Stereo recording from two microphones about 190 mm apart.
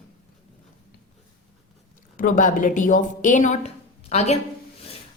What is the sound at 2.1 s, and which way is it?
A woman's voice, 45° left (ahead or behind).